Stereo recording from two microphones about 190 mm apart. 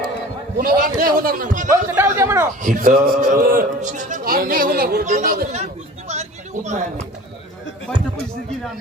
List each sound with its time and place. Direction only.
0.6 s a man's voice: 50° right (ahead or behind)
1.7 s a man's voice: 15° right (ahead or behind)
2.6 s a man's voice: 40° right (ahead or behind)
6.1 s a sound: 35° right (ahead or behind)
6.7 s speech: 40° right (ahead or behind)